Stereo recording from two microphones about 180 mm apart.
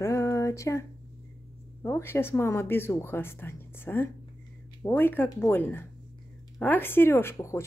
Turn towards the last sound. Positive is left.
turn(degrees=15)  # may be behind; listen again after turning